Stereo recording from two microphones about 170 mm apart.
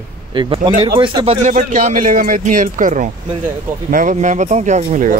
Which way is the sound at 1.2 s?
50° right (ahead or behind).